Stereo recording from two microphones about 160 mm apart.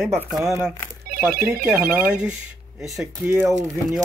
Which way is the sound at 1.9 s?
5° right (ahead or behind).